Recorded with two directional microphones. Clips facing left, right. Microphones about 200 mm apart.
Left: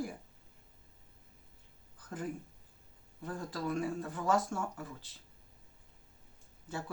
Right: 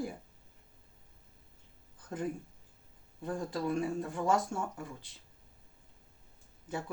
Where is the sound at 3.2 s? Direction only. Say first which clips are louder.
Right 3 dB; 25° right (ahead or behind).